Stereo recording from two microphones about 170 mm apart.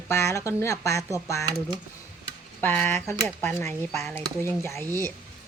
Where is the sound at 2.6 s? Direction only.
10° left (ahead or behind).